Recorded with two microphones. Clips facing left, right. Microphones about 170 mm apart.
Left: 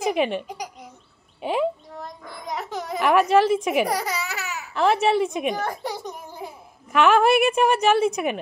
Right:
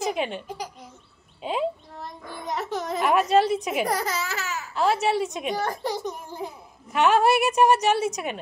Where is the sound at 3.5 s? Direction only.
55° left (ahead or behind).